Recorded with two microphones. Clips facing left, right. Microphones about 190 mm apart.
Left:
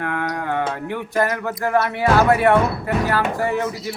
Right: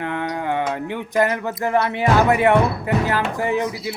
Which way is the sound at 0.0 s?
20° right (ahead or behind).